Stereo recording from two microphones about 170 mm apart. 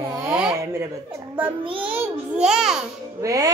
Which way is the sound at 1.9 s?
10° right (ahead or behind).